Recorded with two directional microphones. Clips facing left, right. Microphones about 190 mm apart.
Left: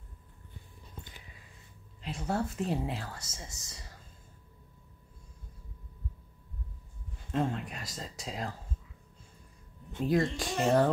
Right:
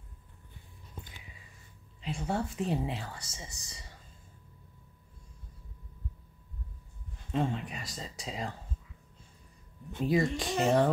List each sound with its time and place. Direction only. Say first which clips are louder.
2.0 s speech: even; centre (ahead or behind)
7.3 s speech: even; centre (ahead or behind)
10.0 s speech: even; centre (ahead or behind)